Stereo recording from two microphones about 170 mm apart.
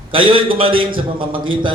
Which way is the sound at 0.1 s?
30° right (ahead or behind).